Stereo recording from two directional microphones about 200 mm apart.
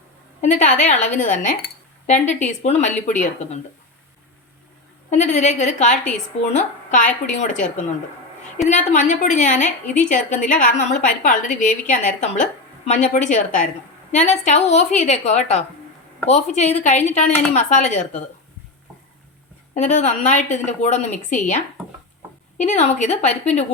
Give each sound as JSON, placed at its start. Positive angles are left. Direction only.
{"t": 0.4, "sound": "a woman's voice", "side_deg": 35}
{"t": 5.1, "sound": "a woman's voice", "side_deg": 35}
{"t": 19.7, "sound": "a woman's voice", "side_deg": 35}